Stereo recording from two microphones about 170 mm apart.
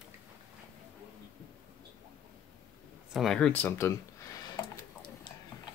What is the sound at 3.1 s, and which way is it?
Speech, centre (ahead or behind).